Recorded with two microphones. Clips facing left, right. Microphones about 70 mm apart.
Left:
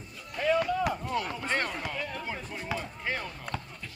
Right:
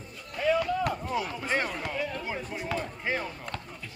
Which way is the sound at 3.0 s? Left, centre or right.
Centre.